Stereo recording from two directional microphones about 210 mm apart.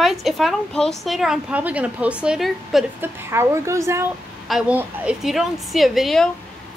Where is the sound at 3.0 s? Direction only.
10° right (ahead or behind).